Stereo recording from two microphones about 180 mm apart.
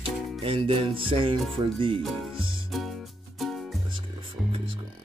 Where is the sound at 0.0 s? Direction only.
30° right (ahead or behind).